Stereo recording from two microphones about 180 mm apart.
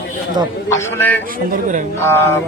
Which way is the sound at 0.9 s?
10° left (ahead or behind).